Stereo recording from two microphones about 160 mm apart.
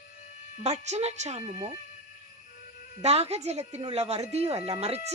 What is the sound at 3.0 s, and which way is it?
A woman's voice, 40° right (ahead or behind).